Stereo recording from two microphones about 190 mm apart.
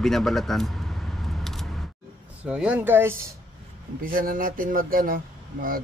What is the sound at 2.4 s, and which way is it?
Speech, 5° right (ahead or behind).